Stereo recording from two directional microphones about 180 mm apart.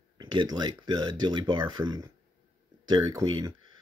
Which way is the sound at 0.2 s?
25° right (ahead or behind).